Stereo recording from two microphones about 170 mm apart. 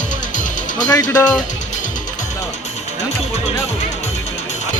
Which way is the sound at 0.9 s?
20° left (ahead or behind).